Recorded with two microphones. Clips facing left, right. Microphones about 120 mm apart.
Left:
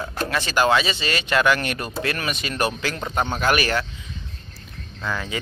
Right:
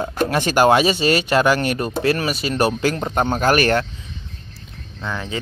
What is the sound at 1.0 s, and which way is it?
Speech, 40° right (ahead or behind).